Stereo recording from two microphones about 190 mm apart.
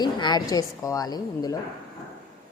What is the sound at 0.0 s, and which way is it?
A woman's voice, 20° left (ahead or behind).